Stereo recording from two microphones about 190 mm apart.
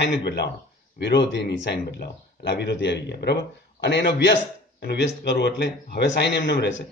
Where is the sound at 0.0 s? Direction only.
65° left (ahead or behind).